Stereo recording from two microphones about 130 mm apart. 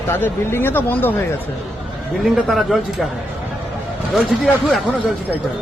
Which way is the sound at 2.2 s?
Centre (ahead or behind).